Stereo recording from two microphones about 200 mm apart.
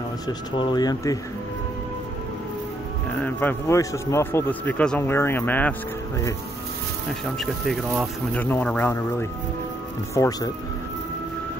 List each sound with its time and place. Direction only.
0.3 s speech: 20° left (ahead or behind)
3.2 s speech: 10° left (ahead or behind)